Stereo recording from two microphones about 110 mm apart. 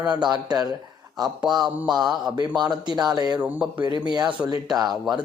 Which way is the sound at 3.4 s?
15° right (ahead or behind).